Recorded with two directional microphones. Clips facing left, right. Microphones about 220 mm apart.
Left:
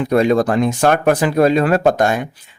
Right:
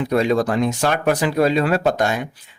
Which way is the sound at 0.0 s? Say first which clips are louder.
Left 4 dB; 55° left (ahead or behind).